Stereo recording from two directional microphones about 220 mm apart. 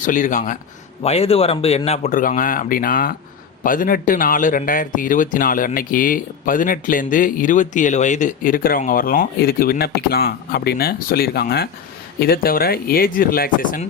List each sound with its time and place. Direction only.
0.0 s a man's voice: 35° left (ahead or behind)